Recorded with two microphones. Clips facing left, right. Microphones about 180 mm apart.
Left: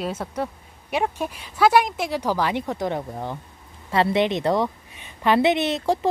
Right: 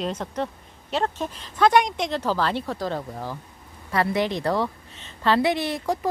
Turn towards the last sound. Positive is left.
turn(degrees=30)  # may be behind; listen again after turning